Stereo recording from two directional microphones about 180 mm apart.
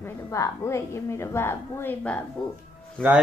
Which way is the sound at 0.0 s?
15° left (ahead or behind).